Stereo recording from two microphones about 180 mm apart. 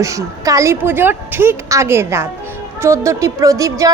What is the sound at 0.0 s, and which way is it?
A woman's voice, 15° right (ahead or behind).